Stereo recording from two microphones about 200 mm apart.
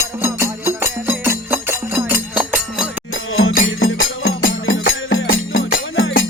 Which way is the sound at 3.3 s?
80° left.